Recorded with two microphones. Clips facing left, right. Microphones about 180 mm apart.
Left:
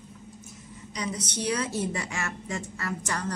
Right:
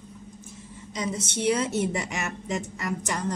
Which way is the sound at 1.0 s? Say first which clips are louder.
Right 3 dB; 25° right (ahead or behind).